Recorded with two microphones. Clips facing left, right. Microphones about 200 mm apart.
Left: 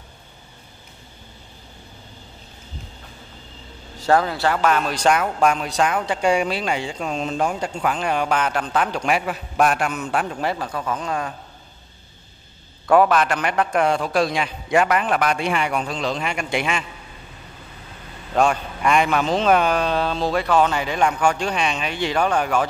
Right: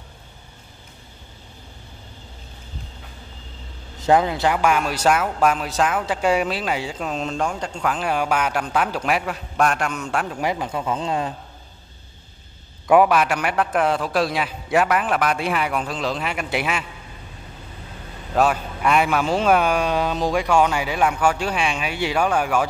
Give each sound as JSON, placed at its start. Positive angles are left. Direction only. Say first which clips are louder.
{"t": 4.0, "sound": "speech", "louder": "right 1 dB", "side_deg": -20}
{"t": 10.4, "sound": "speech", "louder": "right 1 dB", "side_deg": -15}
{"t": 12.8, "sound": "speech", "louder": "even", "side_deg": -10}
{"t": 18.3, "sound": "speech", "louder": "even", "side_deg": -5}